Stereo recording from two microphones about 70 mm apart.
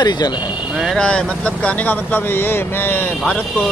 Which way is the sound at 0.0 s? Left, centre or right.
Left.